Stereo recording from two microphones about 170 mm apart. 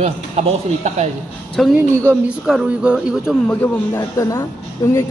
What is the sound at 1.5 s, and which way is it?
Speech, centre (ahead or behind).